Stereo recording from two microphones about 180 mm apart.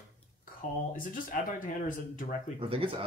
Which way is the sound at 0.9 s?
50° left (ahead or behind).